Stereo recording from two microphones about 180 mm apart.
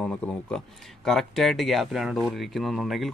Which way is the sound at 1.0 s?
Centre (ahead or behind).